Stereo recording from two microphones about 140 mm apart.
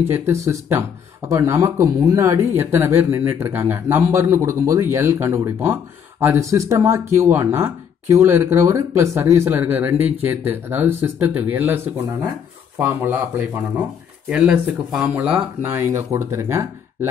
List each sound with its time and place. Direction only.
0.0 s speech: 15° right (ahead or behind)